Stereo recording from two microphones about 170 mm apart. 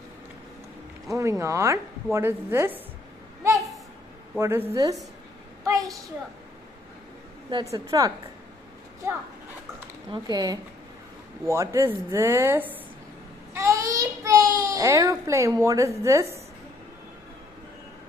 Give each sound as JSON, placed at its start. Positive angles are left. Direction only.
{"t": 1.1, "sound": "a woman's voice", "side_deg": -15}
{"t": 4.4, "sound": "a woman's voice", "side_deg": -15}
{"t": 7.4, "sound": "a woman's voice", "side_deg": -25}
{"t": 10.1, "sound": "a woman's voice", "side_deg": -25}
{"t": 13.5, "sound": "child singing", "side_deg": -20}
{"t": 16.0, "sound": "a woman's voice", "side_deg": -15}